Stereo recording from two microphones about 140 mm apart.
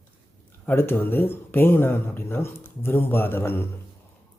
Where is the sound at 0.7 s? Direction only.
15° left (ahead or behind).